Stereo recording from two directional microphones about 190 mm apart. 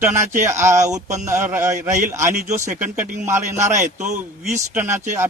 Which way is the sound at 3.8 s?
40° right (ahead or behind).